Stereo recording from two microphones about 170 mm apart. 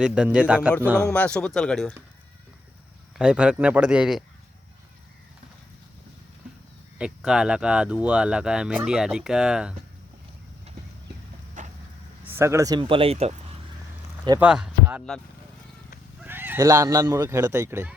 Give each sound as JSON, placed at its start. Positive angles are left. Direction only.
{"t": 0.0, "sound": "a man's voice", "side_deg": -5}
{"t": 0.9, "sound": "speech", "side_deg": 5}
{"t": 3.2, "sound": "speech", "side_deg": -5}
{"t": 7.0, "sound": "speech", "side_deg": -5}
{"t": 11.6, "sound": "vehicle", "side_deg": -45}
{"t": 12.4, "sound": "speech", "side_deg": -15}
{"t": 14.3, "sound": "a man's voice", "side_deg": -5}
{"t": 16.2, "sound": "speech", "side_deg": -10}